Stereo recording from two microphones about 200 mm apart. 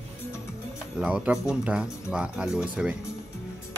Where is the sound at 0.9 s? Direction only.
5° right (ahead or behind).